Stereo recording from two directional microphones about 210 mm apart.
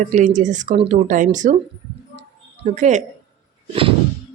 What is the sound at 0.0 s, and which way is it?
Speech, 35° right (ahead or behind).